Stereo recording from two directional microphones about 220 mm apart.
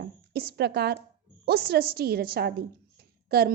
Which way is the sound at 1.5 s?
45° right (ahead or behind).